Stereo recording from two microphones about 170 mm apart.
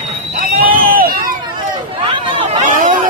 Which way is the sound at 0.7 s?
55° right (ahead or behind).